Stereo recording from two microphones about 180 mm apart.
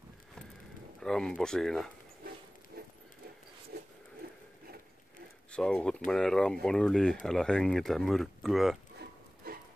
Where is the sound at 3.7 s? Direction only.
60° right (ahead or behind).